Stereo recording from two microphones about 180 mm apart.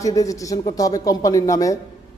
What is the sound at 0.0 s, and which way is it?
A woman's voice, 20° left (ahead or behind).